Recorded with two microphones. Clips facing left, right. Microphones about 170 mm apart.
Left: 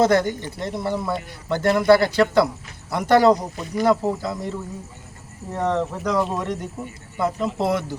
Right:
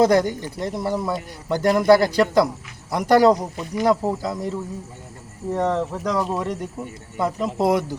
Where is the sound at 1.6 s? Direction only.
40° right (ahead or behind).